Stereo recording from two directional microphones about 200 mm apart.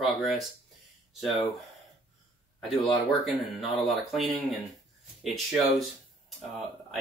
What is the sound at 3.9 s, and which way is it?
Speech, centre (ahead or behind).